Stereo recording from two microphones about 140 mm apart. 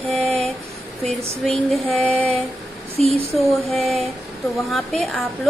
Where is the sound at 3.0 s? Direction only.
45° right (ahead or behind).